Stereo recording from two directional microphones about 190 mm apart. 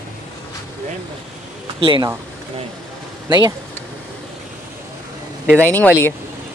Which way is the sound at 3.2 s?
20° right (ahead or behind).